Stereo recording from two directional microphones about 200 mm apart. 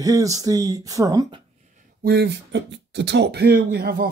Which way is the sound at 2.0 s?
55° right (ahead or behind).